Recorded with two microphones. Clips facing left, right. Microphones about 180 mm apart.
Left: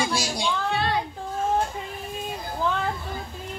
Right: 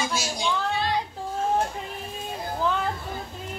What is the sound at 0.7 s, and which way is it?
Child singing, 60° left (ahead or behind).